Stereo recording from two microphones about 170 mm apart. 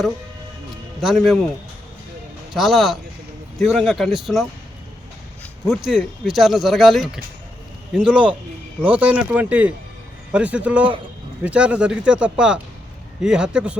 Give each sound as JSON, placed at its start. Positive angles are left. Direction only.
{"t": 1.0, "sound": "speech", "side_deg": 0}
{"t": 2.5, "sound": "speech", "side_deg": 0}
{"t": 5.6, "sound": "speech", "side_deg": 0}